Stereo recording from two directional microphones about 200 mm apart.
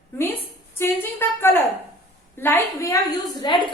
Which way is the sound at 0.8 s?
10° left (ahead or behind).